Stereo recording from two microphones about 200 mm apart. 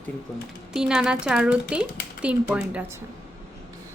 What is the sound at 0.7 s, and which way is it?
Speech, 5° right (ahead or behind).